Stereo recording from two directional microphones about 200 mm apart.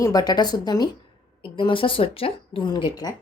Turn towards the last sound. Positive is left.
turn(degrees=20)  # may be behind; listen again after turning